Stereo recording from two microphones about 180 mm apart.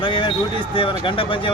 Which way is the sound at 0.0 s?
25° left (ahead or behind).